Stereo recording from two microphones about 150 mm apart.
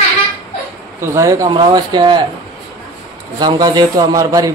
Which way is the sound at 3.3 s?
25° right (ahead or behind).